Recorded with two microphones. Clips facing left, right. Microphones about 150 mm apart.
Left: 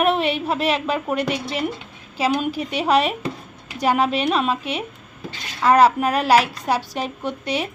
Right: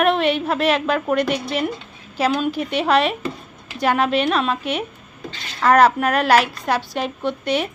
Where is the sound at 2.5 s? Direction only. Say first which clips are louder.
Right 1 dB; 35° left (ahead or behind).